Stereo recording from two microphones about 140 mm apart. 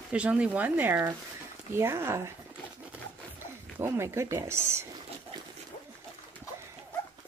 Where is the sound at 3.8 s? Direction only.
20° right (ahead or behind).